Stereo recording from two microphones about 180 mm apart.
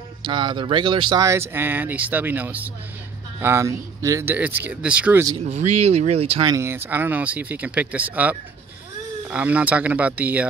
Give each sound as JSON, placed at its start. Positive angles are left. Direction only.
{"t": 0.2, "sound": "speech", "side_deg": -25}
{"t": 1.2, "sound": "speech", "side_deg": -15}
{"t": 5.4, "sound": "speech", "side_deg": -40}
{"t": 6.5, "sound": "speech", "side_deg": -15}